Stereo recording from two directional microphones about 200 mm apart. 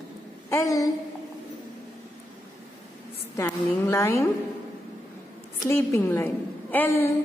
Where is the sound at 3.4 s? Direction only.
10° left (ahead or behind).